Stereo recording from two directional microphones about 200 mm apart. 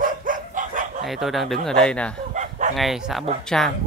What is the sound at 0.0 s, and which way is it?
Dog, 40° right (ahead or behind).